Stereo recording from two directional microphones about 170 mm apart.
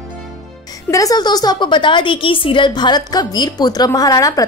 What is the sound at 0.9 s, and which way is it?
A woman's voice, 20° left (ahead or behind).